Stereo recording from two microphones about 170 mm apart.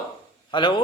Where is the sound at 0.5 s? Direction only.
30° left (ahead or behind).